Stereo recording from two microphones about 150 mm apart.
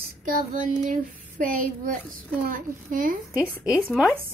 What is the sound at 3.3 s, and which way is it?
Speech, 10° right (ahead or behind).